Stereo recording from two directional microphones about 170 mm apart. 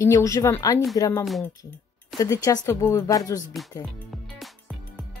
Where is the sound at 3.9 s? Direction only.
Centre (ahead or behind).